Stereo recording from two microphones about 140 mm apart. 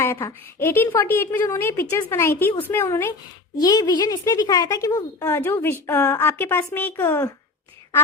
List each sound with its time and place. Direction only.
0.0 s a woman's voice: 20° left (ahead or behind)
3.6 s a woman's voice: 30° left (ahead or behind)